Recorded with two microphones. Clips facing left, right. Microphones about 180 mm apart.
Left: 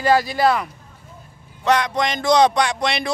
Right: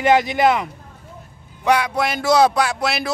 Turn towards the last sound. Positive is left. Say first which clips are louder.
# even
turn(degrees=-5)  # may be behind; listen again after turning